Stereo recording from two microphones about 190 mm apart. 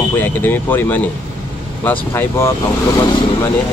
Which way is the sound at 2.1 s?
10° left (ahead or behind).